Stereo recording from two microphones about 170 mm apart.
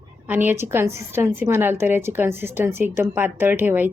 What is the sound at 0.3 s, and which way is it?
Speech, 10° right (ahead or behind).